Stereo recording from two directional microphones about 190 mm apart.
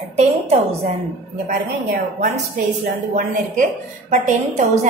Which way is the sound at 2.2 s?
40° right (ahead or behind).